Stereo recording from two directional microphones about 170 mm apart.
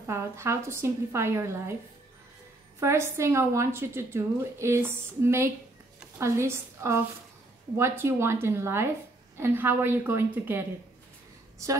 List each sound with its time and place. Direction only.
0.0 s a woman's voice: 15° right (ahead or behind)
2.8 s a woman's voice: 15° right (ahead or behind)